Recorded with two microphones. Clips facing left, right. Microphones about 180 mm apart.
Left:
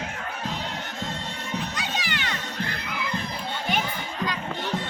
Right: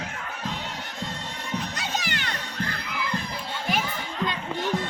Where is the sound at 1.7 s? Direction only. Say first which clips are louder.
Even; 45° right (ahead or behind).